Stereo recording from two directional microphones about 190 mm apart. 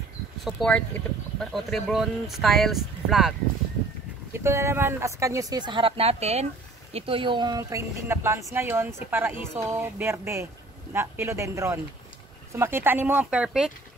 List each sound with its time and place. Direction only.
0.4 s speech: centre (ahead or behind)
4.3 s speech: 15° right (ahead or behind)